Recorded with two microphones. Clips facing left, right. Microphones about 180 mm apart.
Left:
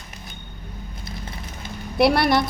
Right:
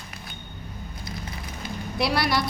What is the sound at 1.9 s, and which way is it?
Speech, 60° left (ahead or behind).